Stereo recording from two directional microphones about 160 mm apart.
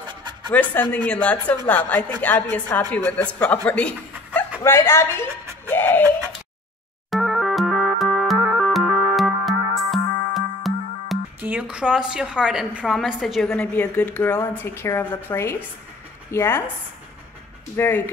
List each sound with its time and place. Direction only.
0.1 s pant: 30° right (ahead or behind)
0.5 s a woman's voice: 10° left (ahead or behind)
3.6 s chuckle: 10° left (ahead or behind)
4.6 s speech: 15° left (ahead or behind)
7.1 s music: centre (ahead or behind)
11.4 s a woman's voice: 10° right (ahead or behind); by 16.6 s 15° left (ahead or behind)
17.7 s a woman's voice: 15° left (ahead or behind)